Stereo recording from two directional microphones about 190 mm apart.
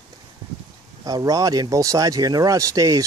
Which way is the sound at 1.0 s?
20° right (ahead or behind).